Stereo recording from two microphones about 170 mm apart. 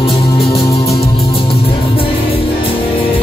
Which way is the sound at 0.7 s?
35° left (ahead or behind).